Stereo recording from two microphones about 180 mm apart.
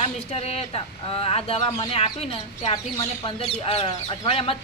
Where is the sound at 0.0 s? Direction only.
35° left (ahead or behind).